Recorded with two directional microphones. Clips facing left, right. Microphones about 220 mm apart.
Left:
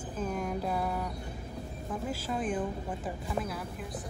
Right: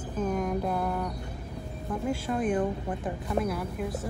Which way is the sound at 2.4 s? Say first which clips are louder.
Right 5 dB; 60° right (ahead or behind).